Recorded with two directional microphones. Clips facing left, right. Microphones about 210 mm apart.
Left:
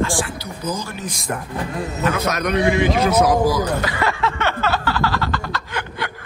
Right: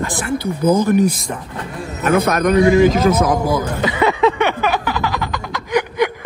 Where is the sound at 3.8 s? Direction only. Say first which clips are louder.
Right 7 dB; 20° right (ahead or behind).